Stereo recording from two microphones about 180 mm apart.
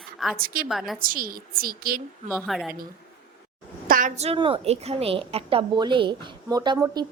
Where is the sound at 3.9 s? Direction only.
40° right (ahead or behind); by 7.1 s 20° right (ahead or behind).